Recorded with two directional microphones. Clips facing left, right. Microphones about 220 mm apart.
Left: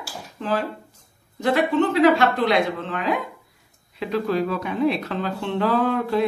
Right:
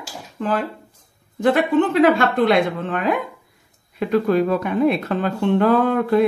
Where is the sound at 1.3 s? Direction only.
50° right (ahead or behind).